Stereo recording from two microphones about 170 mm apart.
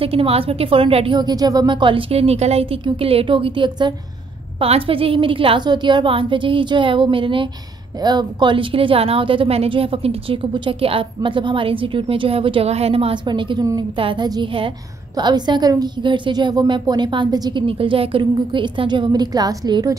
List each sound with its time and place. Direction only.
0.0 s a woman's voice: 35° right (ahead or behind)